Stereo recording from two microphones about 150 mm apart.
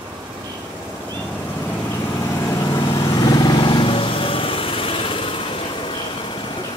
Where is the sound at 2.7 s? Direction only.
25° left (ahead or behind).